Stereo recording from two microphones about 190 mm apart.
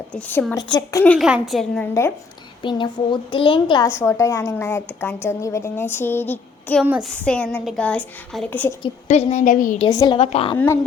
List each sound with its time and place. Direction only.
0.1 s a woman's voice: 10° left (ahead or behind)
1.9 s a woman's voice: 15° left (ahead or behind)
2.6 s a woman's voice: 25° left (ahead or behind); by 8.7 s 10° left (ahead or behind)
9.0 s a woman's voice: 35° left (ahead or behind)
9.9 s a woman's voice: 20° left (ahead or behind)
10.2 s a woman's voice: 30° left (ahead or behind)